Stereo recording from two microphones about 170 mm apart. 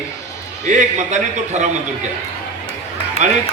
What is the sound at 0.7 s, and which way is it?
A man's voice, 45° right (ahead or behind).